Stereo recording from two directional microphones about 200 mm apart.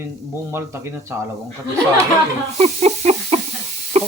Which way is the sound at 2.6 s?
30° right (ahead or behind).